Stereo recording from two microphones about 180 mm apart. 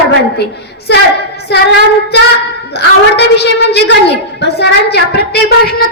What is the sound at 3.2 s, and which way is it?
A woman's voice, 65° left (ahead or behind).